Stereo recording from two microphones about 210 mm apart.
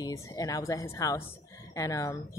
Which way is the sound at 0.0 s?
15° left (ahead or behind).